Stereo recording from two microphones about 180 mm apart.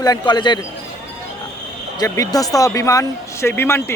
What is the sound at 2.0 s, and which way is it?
Speech, 20° left (ahead or behind).